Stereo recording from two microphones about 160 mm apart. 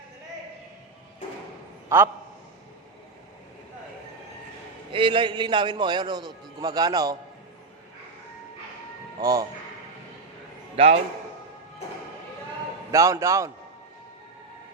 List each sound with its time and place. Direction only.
1.9 s a man's voice: 15° right (ahead or behind)
4.9 s a man's voice: 30° right (ahead or behind)
9.1 s a man's voice: 25° right (ahead or behind)
10.8 s a man's voice: 40° right (ahead or behind)
12.9 s a man's voice: 20° right (ahead or behind)